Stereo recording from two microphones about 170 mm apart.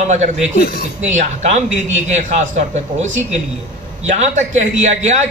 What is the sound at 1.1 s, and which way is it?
A man's voice, 45° right (ahead or behind).